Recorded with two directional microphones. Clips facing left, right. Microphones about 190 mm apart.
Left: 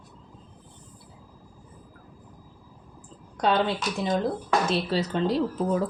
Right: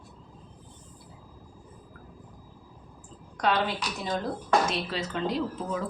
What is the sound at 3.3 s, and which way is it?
A woman's voice, 30° left (ahead or behind).